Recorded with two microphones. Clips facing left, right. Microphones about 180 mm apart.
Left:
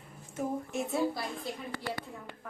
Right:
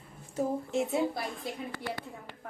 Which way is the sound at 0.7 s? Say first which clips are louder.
Right 2 dB; 20° right (ahead or behind).